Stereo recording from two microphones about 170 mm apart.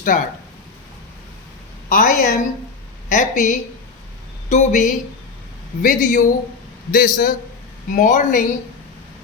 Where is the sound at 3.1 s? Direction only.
50° left (ahead or behind).